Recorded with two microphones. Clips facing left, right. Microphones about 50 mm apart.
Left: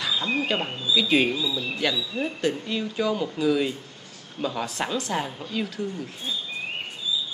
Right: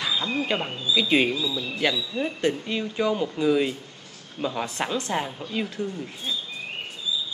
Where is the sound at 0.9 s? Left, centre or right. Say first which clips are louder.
Even; centre.